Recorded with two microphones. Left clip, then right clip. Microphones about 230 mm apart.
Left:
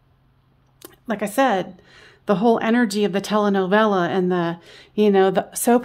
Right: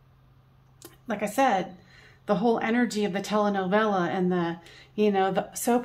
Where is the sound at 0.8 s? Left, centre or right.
Left.